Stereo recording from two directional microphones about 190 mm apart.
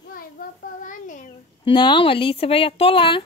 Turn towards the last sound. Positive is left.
turn(degrees=25)  # may be behind; listen again after turning